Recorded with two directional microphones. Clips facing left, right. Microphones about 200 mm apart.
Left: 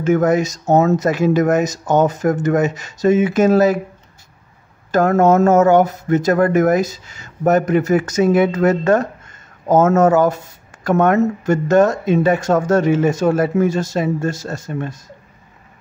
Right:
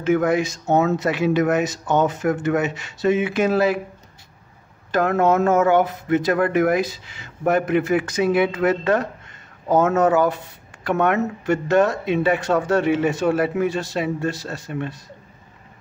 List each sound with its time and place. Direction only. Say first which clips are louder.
0.0 s speech: left 4 dB; 45° left (ahead or behind)
4.9 s speech: left 5 dB; 45° left (ahead or behind)